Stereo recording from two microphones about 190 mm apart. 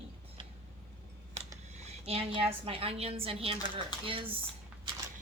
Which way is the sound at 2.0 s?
30° right (ahead or behind).